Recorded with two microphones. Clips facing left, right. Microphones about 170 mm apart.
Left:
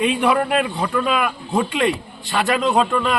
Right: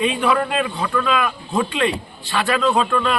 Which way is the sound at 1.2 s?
20° left (ahead or behind).